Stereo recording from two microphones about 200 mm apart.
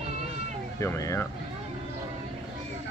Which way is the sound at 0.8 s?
15° left (ahead or behind).